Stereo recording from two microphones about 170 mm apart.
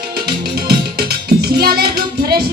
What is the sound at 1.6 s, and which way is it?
Music, 65° right (ahead or behind).